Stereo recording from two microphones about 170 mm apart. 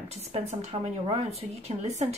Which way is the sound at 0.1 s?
40° right (ahead or behind).